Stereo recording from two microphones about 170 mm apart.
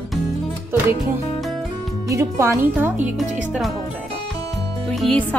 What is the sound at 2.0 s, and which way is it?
Speech, 15° right (ahead or behind).